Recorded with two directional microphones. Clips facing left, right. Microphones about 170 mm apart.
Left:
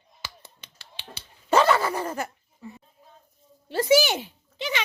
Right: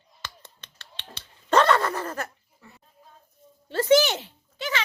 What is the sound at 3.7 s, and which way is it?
Speech, 10° left (ahead or behind).